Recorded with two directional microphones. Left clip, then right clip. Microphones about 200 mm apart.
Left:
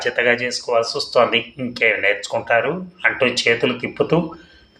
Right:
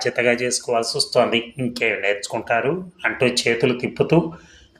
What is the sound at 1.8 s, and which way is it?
Speech, 40° right (ahead or behind).